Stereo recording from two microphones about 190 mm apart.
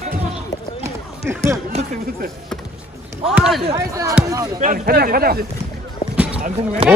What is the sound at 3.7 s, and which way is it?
Speech, 20° right (ahead or behind).